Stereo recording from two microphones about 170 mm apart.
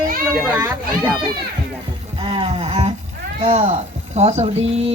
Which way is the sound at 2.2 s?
30° right (ahead or behind).